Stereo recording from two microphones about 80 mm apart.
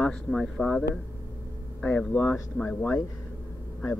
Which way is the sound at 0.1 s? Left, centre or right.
Centre.